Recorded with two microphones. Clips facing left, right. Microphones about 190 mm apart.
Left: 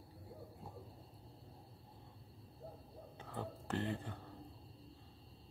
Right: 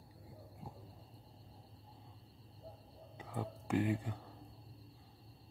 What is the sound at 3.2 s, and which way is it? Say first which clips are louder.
A man's voice: right 3 dB; 10° right (ahead or behind).